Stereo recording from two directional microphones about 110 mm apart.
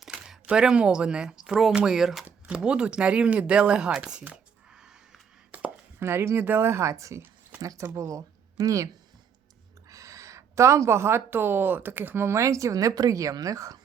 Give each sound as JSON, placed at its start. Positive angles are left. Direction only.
{"t": 0.0, "sound": "speech", "side_deg": -5}
{"t": 5.5, "sound": "speech", "side_deg": -20}
{"t": 9.9, "sound": "a woman's voice", "side_deg": -30}